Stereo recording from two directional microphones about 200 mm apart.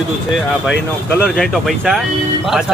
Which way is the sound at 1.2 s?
Centre (ahead or behind).